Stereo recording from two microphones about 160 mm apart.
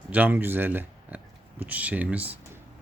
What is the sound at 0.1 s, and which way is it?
Speech, 10° right (ahead or behind).